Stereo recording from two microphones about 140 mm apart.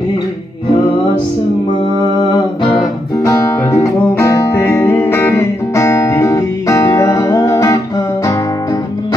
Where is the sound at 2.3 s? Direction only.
35° left (ahead or behind).